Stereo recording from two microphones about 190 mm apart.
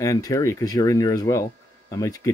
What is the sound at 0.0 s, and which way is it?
Speech, 15° left (ahead or behind).